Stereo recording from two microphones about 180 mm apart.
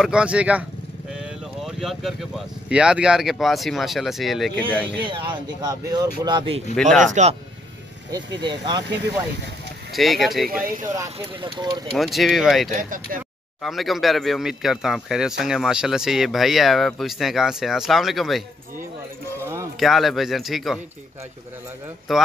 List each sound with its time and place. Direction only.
0.0 s speech: 5° right (ahead or behind)
5.0 s speech: 25° right (ahead or behind)
6.7 s speech: 5° left (ahead or behind)
8.5 s speech: 25° right (ahead or behind)
9.9 s speech: centre (ahead or behind)
10.5 s speech: 50° right (ahead or behind)
11.4 s speech: 20° right (ahead or behind)
12.0 s speech: centre (ahead or behind)
12.7 s speech: 45° right (ahead or behind)
13.6 s speech: centre (ahead or behind)
19.4 s a sound: 15° right (ahead or behind)
19.8 s speech: centre (ahead or behind)
22.1 s speech: centre (ahead or behind)